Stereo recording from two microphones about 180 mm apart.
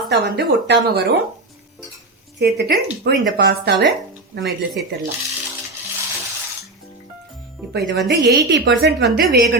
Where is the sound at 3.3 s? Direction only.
65° right (ahead or behind).